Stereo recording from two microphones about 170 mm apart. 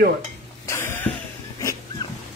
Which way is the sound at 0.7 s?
15° left (ahead or behind).